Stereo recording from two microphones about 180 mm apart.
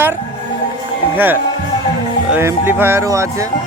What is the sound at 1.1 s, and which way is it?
Speech, 10° right (ahead or behind).